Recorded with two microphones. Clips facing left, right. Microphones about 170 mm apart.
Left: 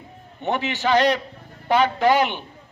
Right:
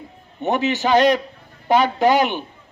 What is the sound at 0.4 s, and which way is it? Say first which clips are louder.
A man's voice: right 3 dB; 20° right (ahead or behind).